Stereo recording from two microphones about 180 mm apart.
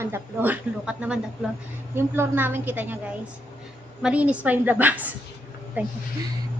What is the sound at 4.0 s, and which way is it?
A woman's voice, 5° right (ahead or behind).